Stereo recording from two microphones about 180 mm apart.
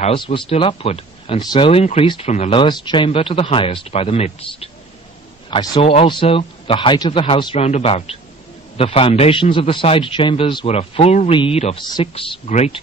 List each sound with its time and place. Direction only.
0.0 s a man's voice: 30° left (ahead or behind)
2.6 s a man's voice: 25° left (ahead or behind)